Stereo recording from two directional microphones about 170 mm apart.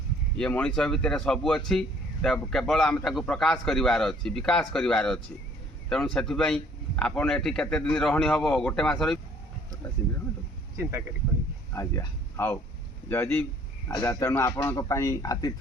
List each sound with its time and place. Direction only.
0.3 s a man's voice: 5° left (ahead or behind)
11.7 s a man's voice: 15° left (ahead or behind)